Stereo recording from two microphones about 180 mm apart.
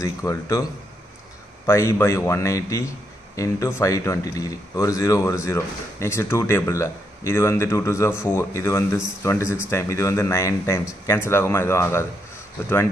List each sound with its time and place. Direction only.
0.0 s speech: 20° left (ahead or behind)
1.7 s speech: 15° left (ahead or behind)